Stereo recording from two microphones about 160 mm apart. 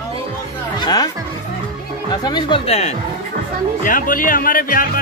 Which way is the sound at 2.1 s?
25° left (ahead or behind).